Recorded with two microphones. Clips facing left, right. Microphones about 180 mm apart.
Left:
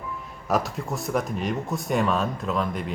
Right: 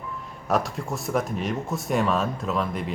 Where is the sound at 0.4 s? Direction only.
Centre (ahead or behind).